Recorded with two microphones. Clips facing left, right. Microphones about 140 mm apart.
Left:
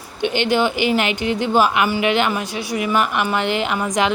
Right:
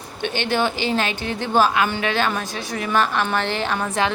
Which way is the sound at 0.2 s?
15° left (ahead or behind).